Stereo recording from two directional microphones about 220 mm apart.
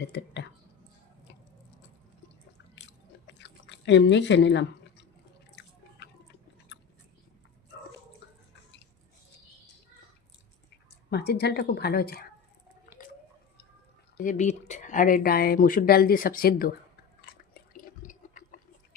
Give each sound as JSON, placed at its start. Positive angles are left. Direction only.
{"t": 2.7, "sound": "chewing", "side_deg": 55}
{"t": 11.1, "sound": "a woman's voice", "side_deg": 50}
{"t": 14.2, "sound": "speech", "side_deg": 35}
{"t": 17.5, "sound": "water", "side_deg": 40}